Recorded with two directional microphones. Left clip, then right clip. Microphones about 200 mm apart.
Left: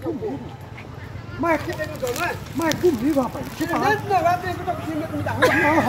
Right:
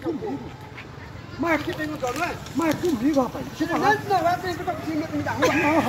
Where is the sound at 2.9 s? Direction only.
45° right (ahead or behind).